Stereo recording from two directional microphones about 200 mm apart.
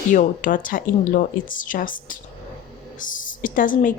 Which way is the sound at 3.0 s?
40° left (ahead or behind).